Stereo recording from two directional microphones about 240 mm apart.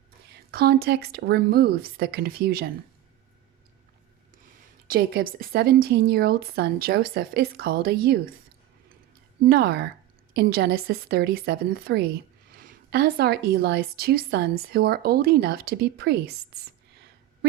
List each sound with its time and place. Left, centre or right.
0.5 s speech: right
4.9 s speech: right
9.4 s a woman's voice: right